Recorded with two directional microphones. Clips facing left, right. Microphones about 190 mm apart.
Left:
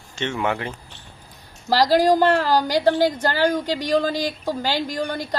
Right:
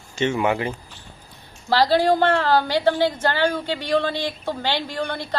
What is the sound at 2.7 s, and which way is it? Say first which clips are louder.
A woman's voice: left 1 dB; 40° left (ahead or behind).